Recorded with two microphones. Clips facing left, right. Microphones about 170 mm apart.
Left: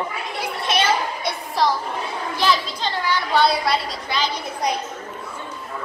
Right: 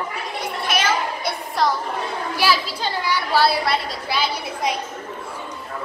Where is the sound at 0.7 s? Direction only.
25° left (ahead or behind).